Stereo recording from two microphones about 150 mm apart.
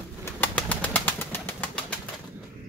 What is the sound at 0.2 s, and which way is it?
Pigeon, 10° left (ahead or behind).